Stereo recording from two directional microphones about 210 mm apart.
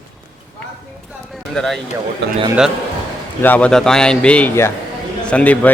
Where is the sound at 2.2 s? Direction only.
55° right (ahead or behind).